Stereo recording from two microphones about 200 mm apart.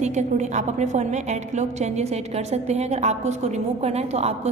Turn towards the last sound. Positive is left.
turn(degrees=-30)  # may be behind; listen again after turning